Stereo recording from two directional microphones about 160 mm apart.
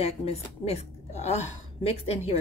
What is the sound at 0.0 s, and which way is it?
A woman's voice, 40° left (ahead or behind).